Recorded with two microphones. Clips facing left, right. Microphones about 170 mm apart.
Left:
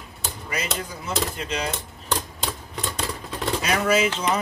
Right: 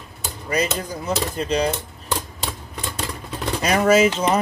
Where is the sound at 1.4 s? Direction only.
35° right (ahead or behind).